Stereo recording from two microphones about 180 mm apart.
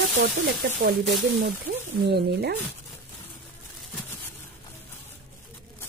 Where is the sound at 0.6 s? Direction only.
50° right (ahead or behind).